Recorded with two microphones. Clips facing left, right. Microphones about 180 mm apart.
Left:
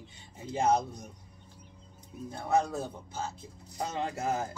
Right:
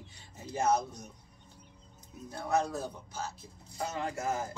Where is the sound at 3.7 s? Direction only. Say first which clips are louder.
Left 1 dB; 25° left (ahead or behind).